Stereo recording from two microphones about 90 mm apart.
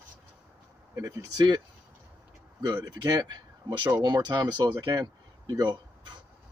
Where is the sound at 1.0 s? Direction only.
40° right (ahead or behind).